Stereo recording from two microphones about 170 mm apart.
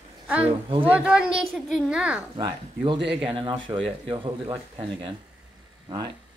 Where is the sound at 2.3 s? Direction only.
25° right (ahead or behind).